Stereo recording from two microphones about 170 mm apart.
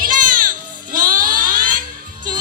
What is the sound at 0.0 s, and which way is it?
Music, 50° right (ahead or behind).